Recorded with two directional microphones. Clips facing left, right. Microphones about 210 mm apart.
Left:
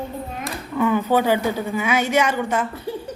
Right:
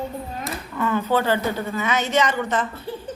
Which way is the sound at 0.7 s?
15° left (ahead or behind).